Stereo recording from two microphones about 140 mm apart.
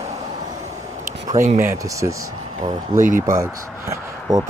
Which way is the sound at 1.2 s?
60° right (ahead or behind).